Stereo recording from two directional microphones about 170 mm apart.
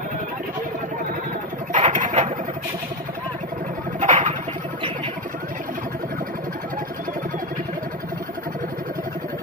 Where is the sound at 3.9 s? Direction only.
45° right (ahead or behind).